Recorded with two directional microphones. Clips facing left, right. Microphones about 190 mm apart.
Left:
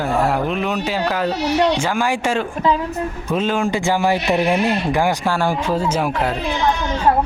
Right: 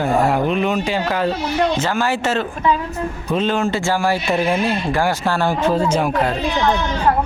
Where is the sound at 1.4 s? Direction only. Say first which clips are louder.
Left 2 dB; 70° left (ahead or behind).